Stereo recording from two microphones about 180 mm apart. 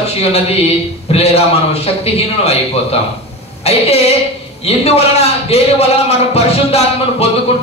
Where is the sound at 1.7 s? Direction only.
35° left (ahead or behind).